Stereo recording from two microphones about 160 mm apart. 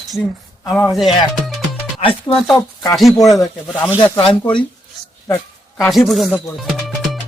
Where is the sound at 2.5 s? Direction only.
25° left (ahead or behind).